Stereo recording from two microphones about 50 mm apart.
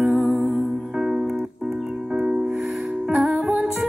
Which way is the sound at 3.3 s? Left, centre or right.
Right.